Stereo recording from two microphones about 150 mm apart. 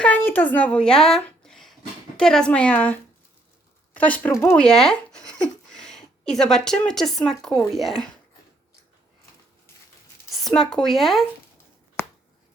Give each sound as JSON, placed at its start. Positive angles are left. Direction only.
{"t": 0.0, "sound": "a woman's voice", "side_deg": 10}
{"t": 4.5, "sound": "speech", "side_deg": 5}
{"t": 10.4, "sound": "speech", "side_deg": 5}